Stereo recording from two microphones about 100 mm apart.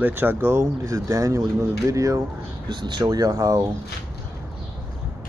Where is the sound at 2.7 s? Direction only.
50° right (ahead or behind).